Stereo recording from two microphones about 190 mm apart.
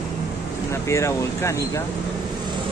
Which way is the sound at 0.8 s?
15° left (ahead or behind).